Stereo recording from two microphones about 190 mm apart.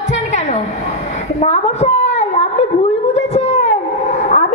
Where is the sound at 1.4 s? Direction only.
35° left (ahead or behind).